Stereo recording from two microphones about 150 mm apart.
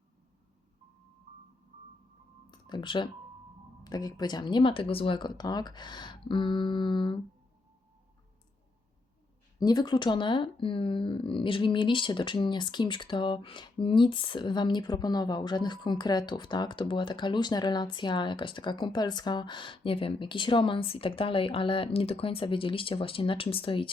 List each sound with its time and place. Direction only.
2.5 s a sound: 30° left (ahead or behind)
3.8 s speech: 25° left (ahead or behind)
9.6 s speech: 25° left (ahead or behind)